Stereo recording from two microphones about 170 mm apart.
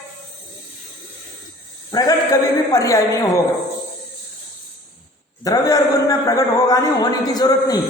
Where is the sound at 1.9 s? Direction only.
20° left (ahead or behind).